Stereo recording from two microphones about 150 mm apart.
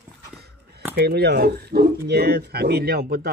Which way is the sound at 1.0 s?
90° right.